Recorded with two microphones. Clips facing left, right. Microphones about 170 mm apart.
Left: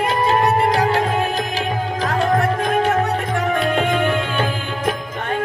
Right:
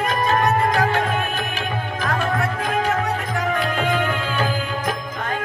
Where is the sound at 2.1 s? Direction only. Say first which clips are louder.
Left 5 dB; 30° left (ahead or behind).